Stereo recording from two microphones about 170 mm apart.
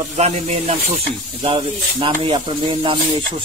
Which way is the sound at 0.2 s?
40° right (ahead or behind).